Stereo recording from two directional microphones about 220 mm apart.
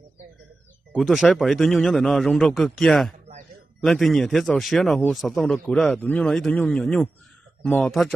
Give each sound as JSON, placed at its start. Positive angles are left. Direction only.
{"t": 0.9, "sound": "a man's voice", "side_deg": 0}